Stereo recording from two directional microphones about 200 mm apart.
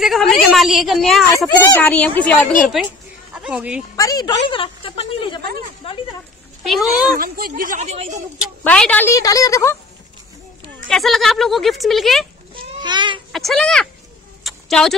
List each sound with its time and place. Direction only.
0.0 s a woman's voice: centre (ahead or behind)
3.9 s speech: 20° left (ahead or behind)
6.6 s speech: centre (ahead or behind)
7.2 s a woman's voice: 45° right (ahead or behind)
8.6 s a woman's voice: 5° left (ahead or behind)
10.9 s a woman's voice: centre (ahead or behind)
12.5 s a child's voice: 25° right (ahead or behind)
13.3 s a woman's voice: centre (ahead or behind)
14.4 s a sound: centre (ahead or behind)